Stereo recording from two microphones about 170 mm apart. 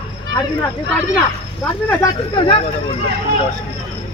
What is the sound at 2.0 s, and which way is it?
Speech, 30° left (ahead or behind).